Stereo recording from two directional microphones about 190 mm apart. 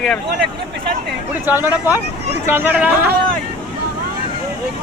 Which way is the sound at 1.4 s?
10° right (ahead or behind).